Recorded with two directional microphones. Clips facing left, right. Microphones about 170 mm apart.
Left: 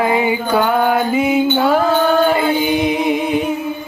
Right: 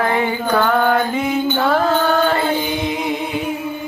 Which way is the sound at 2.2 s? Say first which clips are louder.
Left 3 dB; 10° left (ahead or behind).